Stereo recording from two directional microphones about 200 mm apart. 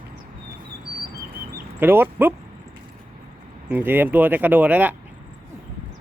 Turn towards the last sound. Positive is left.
turn(degrees=-10)  # may be behind; listen again after turning